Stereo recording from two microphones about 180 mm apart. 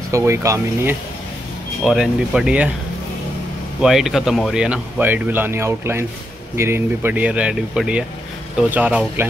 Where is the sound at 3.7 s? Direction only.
Centre (ahead or behind).